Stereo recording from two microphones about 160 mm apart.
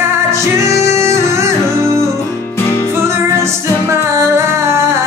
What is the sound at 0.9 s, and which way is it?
Music, 20° right (ahead or behind).